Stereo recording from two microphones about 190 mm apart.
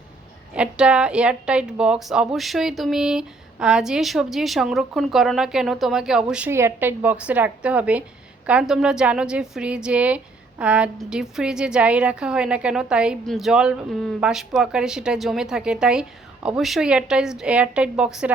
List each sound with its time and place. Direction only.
0.5 s a woman's voice: 5° right (ahead or behind)